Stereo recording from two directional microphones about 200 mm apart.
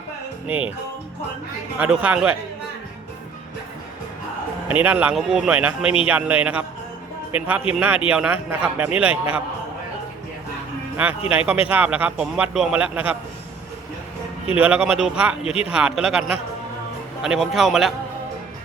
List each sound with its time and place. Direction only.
1.8 s speech: 5° right (ahead or behind)
4.7 s a man's voice: 5° right (ahead or behind)
11.3 s a man's voice: 5° right (ahead or behind)
14.5 s speech: 5° right (ahead or behind)
15.4 s speech: 30° left (ahead or behind)
15.7 s speech: 5° right (ahead or behind)